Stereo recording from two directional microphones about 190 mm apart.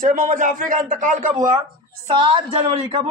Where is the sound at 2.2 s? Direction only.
25° right (ahead or behind).